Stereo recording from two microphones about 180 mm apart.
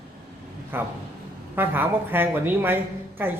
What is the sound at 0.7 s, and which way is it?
Speech, 10° right (ahead or behind).